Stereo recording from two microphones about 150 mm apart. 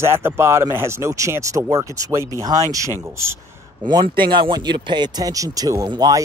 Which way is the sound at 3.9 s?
30° right (ahead or behind).